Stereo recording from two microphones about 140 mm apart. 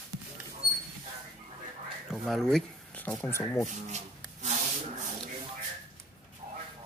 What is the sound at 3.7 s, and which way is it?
Rub, 55° right (ahead or behind).